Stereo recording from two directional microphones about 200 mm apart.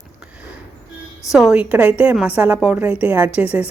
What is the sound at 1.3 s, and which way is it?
A woman's voice, 5° right (ahead or behind).